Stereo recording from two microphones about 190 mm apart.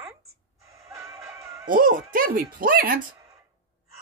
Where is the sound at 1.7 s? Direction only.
45° right (ahead or behind).